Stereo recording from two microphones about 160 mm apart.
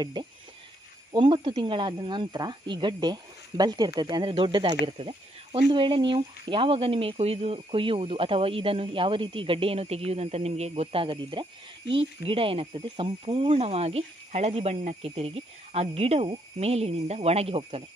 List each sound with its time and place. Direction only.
0.0 s speech: 25° right (ahead or behind)